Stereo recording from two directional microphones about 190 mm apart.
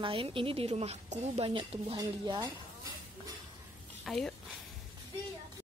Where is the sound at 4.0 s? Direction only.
Centre (ahead or behind).